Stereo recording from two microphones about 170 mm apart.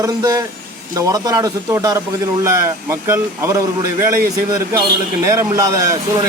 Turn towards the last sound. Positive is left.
turn(degrees=-20)  # may be behind; listen again after turning